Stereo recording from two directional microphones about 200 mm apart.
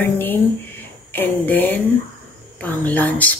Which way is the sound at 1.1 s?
10° left (ahead or behind).